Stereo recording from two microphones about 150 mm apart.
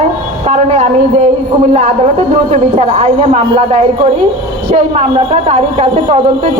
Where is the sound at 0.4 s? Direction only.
45° right (ahead or behind).